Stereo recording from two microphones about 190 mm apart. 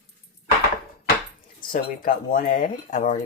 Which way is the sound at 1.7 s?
45° left (ahead or behind).